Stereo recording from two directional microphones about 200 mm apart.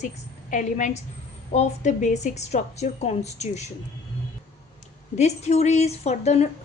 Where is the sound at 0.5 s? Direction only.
40° left (ahead or behind).